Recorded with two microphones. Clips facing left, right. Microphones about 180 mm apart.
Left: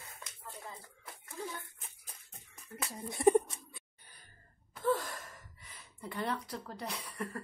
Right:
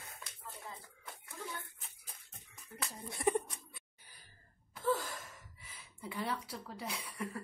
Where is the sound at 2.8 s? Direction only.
20° left (ahead or behind).